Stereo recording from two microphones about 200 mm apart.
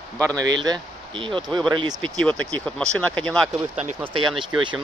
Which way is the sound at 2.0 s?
5° left (ahead or behind).